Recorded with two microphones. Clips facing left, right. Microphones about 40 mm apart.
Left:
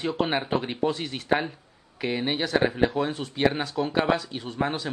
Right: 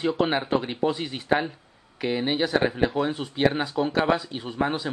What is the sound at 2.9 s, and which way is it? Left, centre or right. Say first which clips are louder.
Speech: right 1 dB; centre.